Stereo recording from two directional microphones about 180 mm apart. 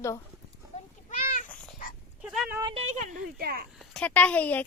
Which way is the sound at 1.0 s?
45° left (ahead or behind).